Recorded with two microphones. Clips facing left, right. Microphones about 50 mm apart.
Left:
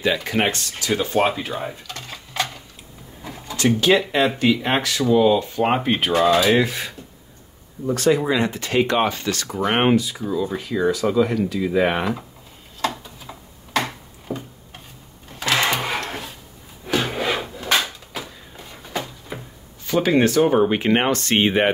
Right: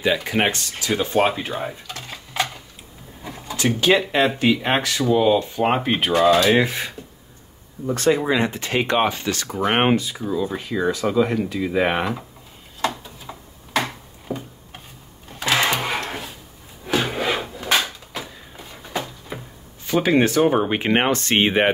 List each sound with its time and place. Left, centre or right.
0.0 s speech: centre
3.2 s a sound: centre
3.6 s speech: centre
6.6 s speech: right
7.9 s speech: right
11.6 s speech: centre
12.9 s tick-tock: centre
15.3 s sewing machine: centre
16.8 s wood: centre
19.9 s speech: centre